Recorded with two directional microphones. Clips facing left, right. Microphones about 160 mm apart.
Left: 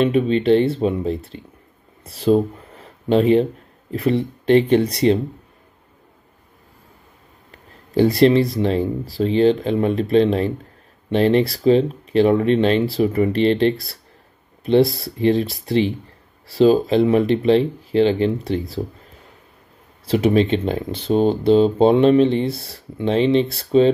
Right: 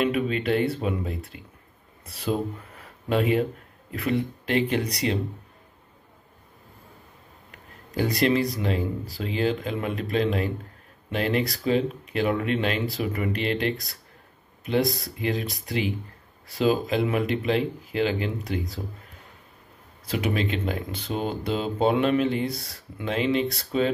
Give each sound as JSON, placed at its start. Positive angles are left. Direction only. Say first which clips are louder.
{"t": 0.0, "sound": "speech", "louder": "left 7 dB", "side_deg": 30}
{"t": 7.5, "sound": "speech", "louder": "left 10 dB", "side_deg": 30}
{"t": 20.1, "sound": "speech", "louder": "left 10 dB", "side_deg": 30}